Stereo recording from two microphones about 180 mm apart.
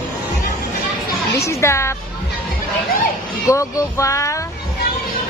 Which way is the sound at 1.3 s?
15° left (ahead or behind).